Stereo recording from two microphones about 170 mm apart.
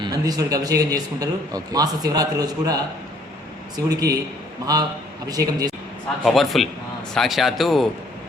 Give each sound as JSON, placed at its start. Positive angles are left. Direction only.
{"t": 0.0, "sound": "a man's voice", "side_deg": -20}
{"t": 6.2, "sound": "speech", "side_deg": 0}